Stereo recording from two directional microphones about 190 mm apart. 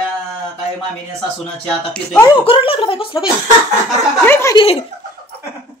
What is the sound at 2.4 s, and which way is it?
Speech, 30° left (ahead or behind).